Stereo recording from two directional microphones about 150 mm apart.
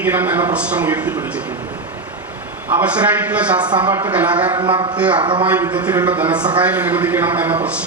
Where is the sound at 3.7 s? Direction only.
30° right (ahead or behind).